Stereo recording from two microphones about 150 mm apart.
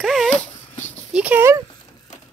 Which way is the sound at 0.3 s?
50° left (ahead or behind).